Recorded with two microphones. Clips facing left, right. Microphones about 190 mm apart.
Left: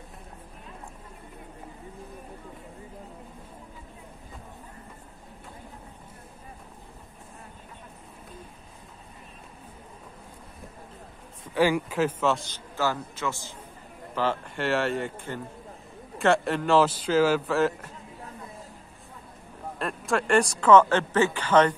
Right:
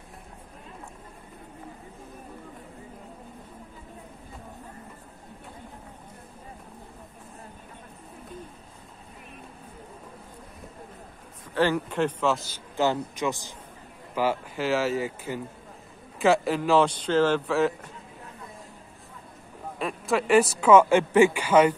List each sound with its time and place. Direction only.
11.5 s a man's voice: 10° left (ahead or behind)
12.7 s a man's voice: 20° right (ahead or behind); by 17.9 s centre (ahead or behind)
19.8 s speech: centre (ahead or behind)